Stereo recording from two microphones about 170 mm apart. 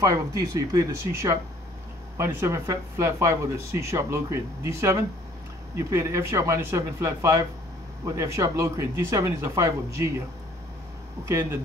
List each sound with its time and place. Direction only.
0.0 s speech: 20° right (ahead or behind)